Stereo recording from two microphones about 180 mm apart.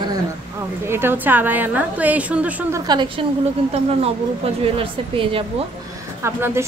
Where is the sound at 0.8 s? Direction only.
15° right (ahead or behind).